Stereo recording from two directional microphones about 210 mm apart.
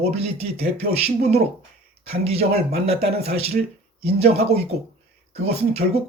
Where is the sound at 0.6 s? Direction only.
30° right (ahead or behind).